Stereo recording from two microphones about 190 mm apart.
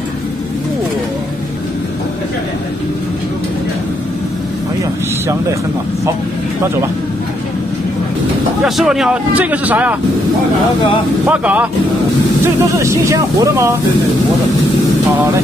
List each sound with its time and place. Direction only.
8.6 s speech: centre (ahead or behind)
11.2 s speech: 10° right (ahead or behind)
12.7 s speech: 15° right (ahead or behind)